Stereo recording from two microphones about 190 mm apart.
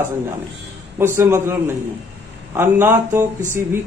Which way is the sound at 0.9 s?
10° right (ahead or behind).